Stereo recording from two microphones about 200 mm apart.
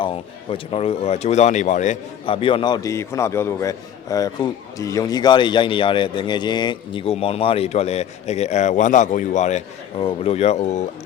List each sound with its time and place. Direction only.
0.0 s speech: 30° left (ahead or behind)